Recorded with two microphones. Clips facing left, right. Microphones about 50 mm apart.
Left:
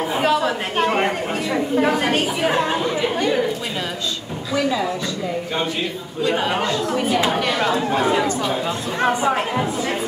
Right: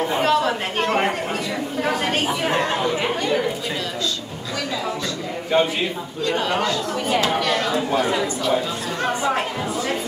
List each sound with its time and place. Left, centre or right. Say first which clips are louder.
0.0 s speech: even; centre
6.2 s speech: left 1 dB; centre
6.9 s speech: left 2 dB; centre
7.3 s speech: left 1 dB; centre